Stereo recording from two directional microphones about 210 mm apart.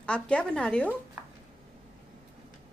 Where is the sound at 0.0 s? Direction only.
5° left (ahead or behind).